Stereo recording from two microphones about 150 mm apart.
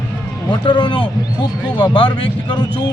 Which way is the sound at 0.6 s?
30° left (ahead or behind).